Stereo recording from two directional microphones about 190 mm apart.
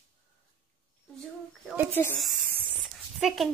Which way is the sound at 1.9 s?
10° left (ahead or behind).